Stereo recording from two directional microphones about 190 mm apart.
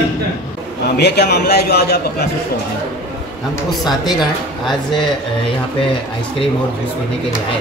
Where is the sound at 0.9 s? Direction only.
60° left (ahead or behind).